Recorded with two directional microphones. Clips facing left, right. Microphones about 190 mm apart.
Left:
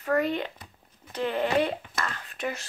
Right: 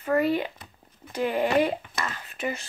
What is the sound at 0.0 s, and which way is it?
Speech, 5° right (ahead or behind).